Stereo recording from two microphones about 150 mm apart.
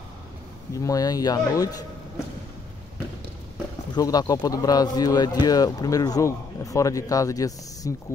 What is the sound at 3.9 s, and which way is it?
Speech, 25° left (ahead or behind).